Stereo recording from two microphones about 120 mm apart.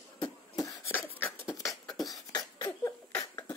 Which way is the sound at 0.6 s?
25° left (ahead or behind).